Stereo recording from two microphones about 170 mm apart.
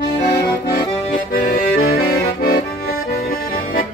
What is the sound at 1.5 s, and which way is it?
Accordion, 60° left (ahead or behind).